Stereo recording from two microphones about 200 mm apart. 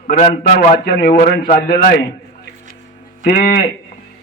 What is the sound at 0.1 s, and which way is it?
Speech, 40° left (ahead or behind).